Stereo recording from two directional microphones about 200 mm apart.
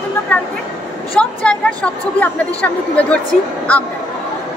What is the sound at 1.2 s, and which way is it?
A woman's voice, 5° left (ahead or behind).